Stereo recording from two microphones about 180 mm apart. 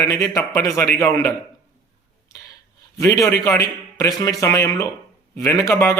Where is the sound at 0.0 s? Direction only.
20° left (ahead or behind).